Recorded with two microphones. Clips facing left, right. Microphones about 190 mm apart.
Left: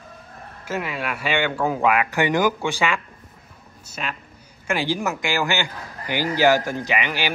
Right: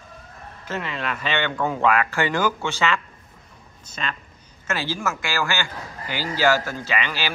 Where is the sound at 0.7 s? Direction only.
10° left (ahead or behind).